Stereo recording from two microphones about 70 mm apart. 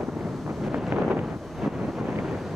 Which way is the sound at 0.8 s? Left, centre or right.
Centre.